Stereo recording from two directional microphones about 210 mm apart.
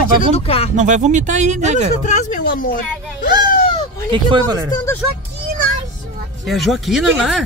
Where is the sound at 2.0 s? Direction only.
35° left (ahead or behind).